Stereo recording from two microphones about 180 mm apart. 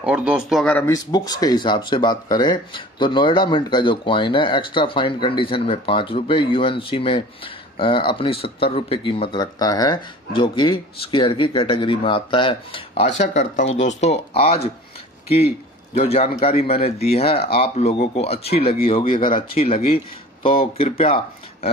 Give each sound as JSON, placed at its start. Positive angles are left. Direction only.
{"t": 0.0, "sound": "speech", "side_deg": -5}
{"t": 0.8, "sound": "speech", "side_deg": 20}
{"t": 13.2, "sound": "speech", "side_deg": 40}
{"t": 16.0, "sound": "speech", "side_deg": 35}